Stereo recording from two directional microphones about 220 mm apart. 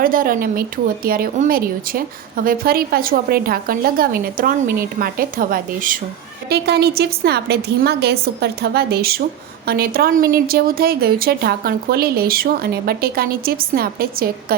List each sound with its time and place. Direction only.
0.0 s a woman's voice: 40° right (ahead or behind)